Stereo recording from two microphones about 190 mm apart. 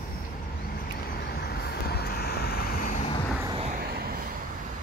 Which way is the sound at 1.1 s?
55° left (ahead or behind).